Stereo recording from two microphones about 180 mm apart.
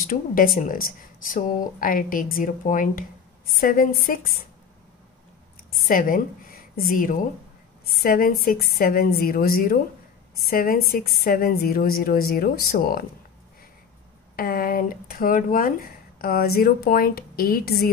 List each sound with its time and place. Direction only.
0.0 s speech: 50° left (ahead or behind)
5.7 s a woman's voice: 50° left (ahead or behind)
14.3 s speech: 55° left (ahead or behind)